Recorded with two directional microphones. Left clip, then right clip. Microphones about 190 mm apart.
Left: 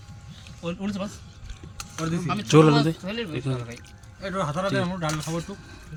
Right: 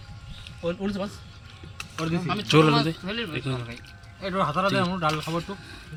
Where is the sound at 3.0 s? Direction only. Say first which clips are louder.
Even; 65° left (ahead or behind).